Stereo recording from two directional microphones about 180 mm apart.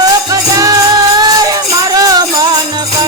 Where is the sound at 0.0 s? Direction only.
20° right (ahead or behind).